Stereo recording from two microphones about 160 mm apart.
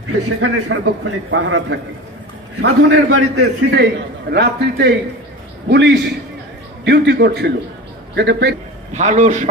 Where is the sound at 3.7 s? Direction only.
90° right.